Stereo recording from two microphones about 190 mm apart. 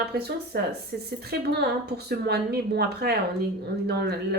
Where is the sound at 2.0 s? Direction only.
60° right (ahead or behind).